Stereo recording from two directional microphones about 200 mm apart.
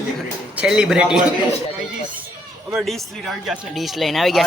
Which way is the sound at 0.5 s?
5° right (ahead or behind).